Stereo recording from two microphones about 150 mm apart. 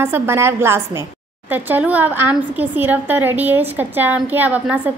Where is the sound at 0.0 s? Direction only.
15° right (ahead or behind).